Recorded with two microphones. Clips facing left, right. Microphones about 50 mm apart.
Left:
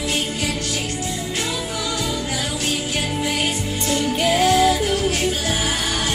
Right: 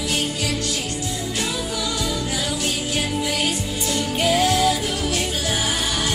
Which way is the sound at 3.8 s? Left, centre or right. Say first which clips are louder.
Left 2 dB; left.